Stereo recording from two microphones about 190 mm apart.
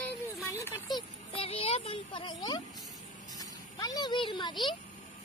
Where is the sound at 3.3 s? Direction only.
20° left (ahead or behind).